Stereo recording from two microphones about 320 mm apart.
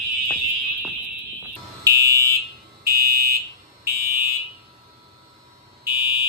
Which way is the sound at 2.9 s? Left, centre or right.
Right.